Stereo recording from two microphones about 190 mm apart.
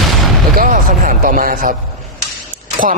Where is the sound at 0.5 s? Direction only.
50° right (ahead or behind).